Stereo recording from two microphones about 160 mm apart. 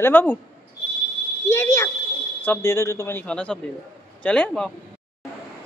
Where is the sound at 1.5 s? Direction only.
15° left (ahead or behind).